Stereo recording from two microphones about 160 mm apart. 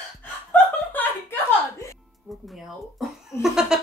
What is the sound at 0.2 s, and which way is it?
Chuckle, 10° left (ahead or behind).